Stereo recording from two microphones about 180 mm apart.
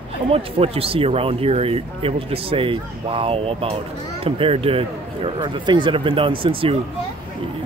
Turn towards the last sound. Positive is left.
turn(degrees=-30)  # may be behind; listen again after turning